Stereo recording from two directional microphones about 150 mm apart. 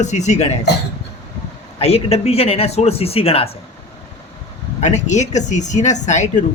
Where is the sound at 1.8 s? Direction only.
45° left (ahead or behind).